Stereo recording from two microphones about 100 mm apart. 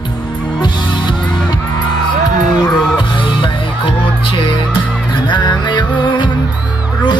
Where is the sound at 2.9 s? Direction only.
55° left (ahead or behind).